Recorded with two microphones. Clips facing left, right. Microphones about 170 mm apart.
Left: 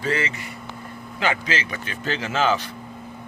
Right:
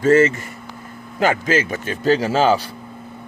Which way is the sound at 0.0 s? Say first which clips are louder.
Right 12 dB; 45° right (ahead or behind).